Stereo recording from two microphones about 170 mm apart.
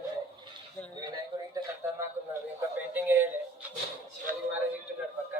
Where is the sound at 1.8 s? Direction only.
15° right (ahead or behind).